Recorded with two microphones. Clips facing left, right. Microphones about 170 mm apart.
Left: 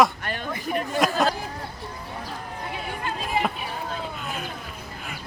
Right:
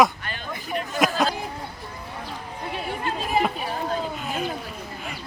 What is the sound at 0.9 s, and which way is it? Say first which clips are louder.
Chatter: right 1 dB; centre (ahead or behind).